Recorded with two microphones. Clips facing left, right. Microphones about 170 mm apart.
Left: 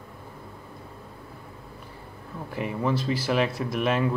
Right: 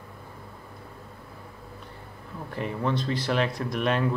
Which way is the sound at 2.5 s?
5° left (ahead or behind).